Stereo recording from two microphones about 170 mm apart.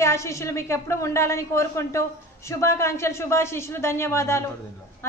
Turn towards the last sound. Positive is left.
turn(degrees=15)  # may be behind; listen again after turning